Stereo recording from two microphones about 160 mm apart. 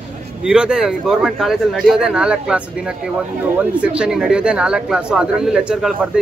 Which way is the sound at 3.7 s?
5° right (ahead or behind).